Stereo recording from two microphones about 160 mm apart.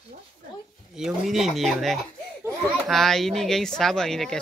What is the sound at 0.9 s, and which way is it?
Speech, centre (ahead or behind).